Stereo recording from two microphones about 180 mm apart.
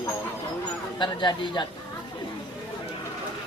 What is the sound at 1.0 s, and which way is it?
Speech, 25° left (ahead or behind).